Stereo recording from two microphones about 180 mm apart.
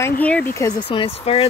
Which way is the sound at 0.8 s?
30° left (ahead or behind).